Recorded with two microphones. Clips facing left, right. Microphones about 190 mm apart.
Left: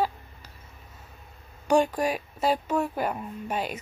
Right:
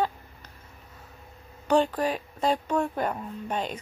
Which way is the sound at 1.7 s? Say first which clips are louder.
Left 1 dB; 10° left (ahead or behind).